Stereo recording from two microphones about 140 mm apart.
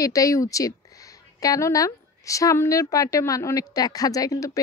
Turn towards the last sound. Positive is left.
turn(degrees=25)  # may be behind; listen again after turning